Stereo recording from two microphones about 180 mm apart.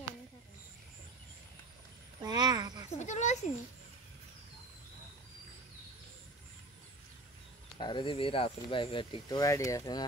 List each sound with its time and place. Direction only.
2.2 s speech: 20° right (ahead or behind)
2.9 s speech: 40° left (ahead or behind)
7.8 s speech: 25° left (ahead or behind)